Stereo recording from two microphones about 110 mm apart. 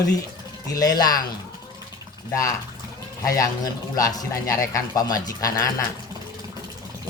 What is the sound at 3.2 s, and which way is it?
Speech, 30° left (ahead or behind).